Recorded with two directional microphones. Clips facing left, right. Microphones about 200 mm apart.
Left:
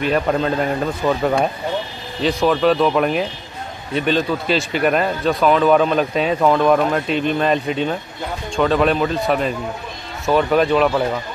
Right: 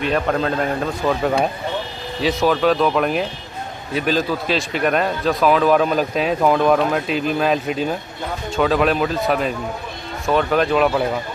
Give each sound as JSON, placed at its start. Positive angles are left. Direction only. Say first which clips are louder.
{"t": 0.0, "sound": "speech", "louder": "left 1 dB", "side_deg": 0}